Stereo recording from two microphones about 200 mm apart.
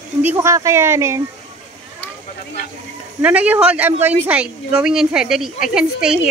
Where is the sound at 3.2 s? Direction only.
5° right (ahead or behind).